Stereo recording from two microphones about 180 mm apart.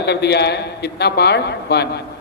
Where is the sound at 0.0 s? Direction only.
70° left (ahead or behind).